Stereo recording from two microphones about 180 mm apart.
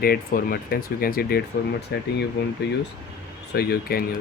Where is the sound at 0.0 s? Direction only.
55° left (ahead or behind).